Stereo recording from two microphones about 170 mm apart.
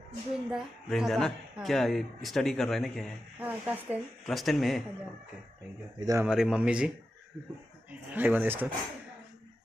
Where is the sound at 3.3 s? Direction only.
10° right (ahead or behind).